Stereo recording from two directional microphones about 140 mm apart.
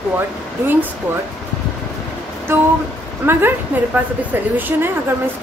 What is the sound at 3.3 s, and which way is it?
A woman's voice, 15° right (ahead or behind).